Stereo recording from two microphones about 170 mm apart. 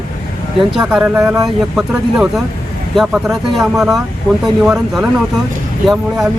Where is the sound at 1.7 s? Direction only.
5° right (ahead or behind).